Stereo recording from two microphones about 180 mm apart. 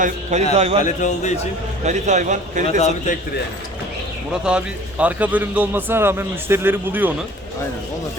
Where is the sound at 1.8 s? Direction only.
40° right (ahead or behind).